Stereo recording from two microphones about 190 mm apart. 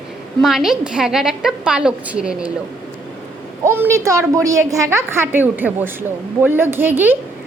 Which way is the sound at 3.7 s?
10° right (ahead or behind).